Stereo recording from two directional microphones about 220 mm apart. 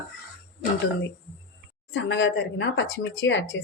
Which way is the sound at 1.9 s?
55° left (ahead or behind).